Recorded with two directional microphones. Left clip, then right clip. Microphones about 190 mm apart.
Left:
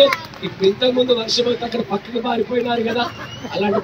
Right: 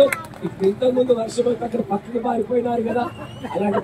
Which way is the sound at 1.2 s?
55° right (ahead or behind).